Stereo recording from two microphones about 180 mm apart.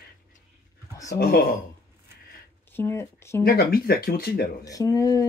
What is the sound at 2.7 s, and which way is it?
Speech, 15° left (ahead or behind).